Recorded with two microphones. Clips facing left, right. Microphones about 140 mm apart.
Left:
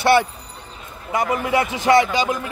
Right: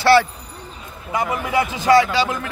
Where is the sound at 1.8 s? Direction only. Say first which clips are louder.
Right 2 dB; 20° left (ahead or behind).